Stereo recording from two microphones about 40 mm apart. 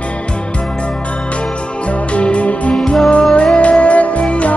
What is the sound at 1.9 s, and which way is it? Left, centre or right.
Music, left.